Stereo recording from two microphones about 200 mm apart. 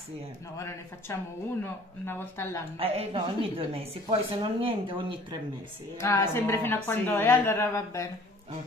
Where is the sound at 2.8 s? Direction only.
30° right (ahead or behind).